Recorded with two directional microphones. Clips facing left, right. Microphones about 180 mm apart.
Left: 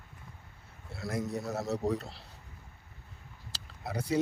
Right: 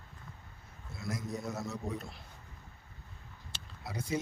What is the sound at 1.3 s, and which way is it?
Speech, 35° left (ahead or behind).